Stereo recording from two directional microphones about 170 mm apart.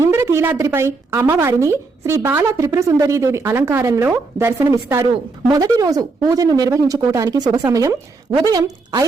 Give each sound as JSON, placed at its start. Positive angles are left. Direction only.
{"t": 0.0, "sound": "speech", "side_deg": -15}